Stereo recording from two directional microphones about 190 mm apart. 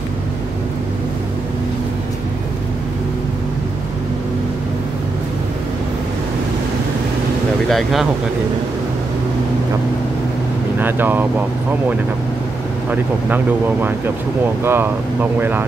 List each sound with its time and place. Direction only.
7.7 s speech: centre (ahead or behind)
10.8 s speech: 10° right (ahead or behind)
12.9 s speech: 10° right (ahead or behind)